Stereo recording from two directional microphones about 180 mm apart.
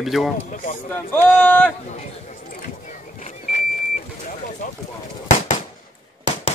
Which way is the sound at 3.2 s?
45° left (ahead or behind).